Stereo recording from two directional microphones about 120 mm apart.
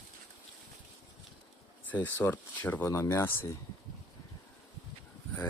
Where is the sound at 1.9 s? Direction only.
15° left (ahead or behind).